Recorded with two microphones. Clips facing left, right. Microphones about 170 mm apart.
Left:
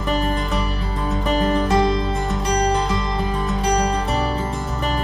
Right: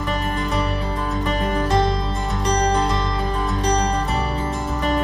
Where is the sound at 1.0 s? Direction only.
Centre (ahead or behind).